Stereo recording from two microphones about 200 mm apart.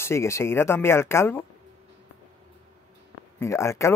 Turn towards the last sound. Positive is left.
turn(degrees=15)  # may be behind; listen again after turning